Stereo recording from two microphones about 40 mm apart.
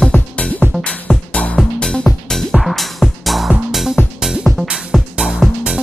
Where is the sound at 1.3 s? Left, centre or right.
Left.